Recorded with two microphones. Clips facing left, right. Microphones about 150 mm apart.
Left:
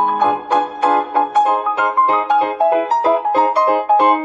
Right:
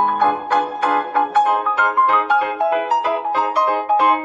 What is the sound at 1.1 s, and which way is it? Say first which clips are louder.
Music: left 2 dB; 30° left (ahead or behind).